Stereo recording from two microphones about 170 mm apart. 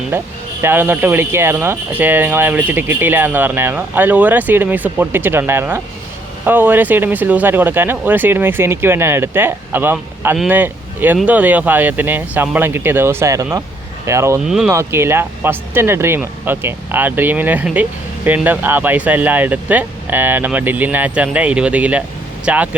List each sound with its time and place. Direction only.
0.1 s speech: 10° right (ahead or behind)
14.4 s speech: centre (ahead or behind)
14.7 s speech: 15° right (ahead or behind)